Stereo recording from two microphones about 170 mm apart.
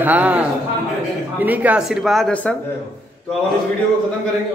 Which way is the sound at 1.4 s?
10° right (ahead or behind).